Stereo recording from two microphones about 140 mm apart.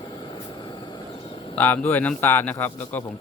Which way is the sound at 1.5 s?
10° left (ahead or behind).